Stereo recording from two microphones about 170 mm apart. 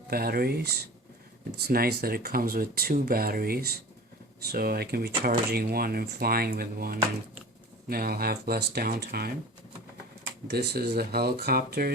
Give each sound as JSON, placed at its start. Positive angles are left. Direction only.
{"t": 0.1, "sound": "speech", "side_deg": -60}
{"t": 10.5, "sound": "speech", "side_deg": -75}